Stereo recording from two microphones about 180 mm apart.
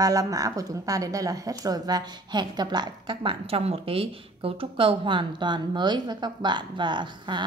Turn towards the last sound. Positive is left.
turn(degrees=-25)  # may be behind; listen again after turning